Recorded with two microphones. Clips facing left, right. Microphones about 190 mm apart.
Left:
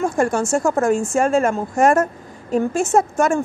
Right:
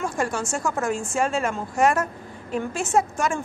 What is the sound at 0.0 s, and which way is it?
A woman's voice, 45° left (ahead or behind).